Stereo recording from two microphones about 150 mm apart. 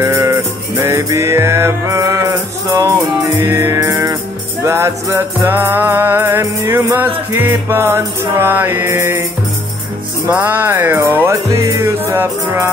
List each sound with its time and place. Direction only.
0.0 s music: 20° right (ahead or behind)
10.2 s music: 10° right (ahead or behind)